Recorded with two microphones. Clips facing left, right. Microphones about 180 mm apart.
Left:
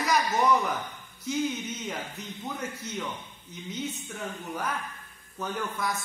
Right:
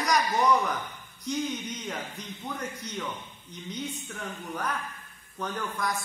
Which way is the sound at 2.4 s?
5° left (ahead or behind).